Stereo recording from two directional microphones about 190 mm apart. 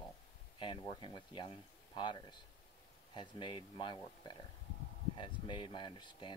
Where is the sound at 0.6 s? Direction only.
25° left (ahead or behind).